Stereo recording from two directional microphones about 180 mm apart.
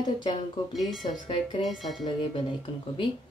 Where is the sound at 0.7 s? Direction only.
Centre (ahead or behind).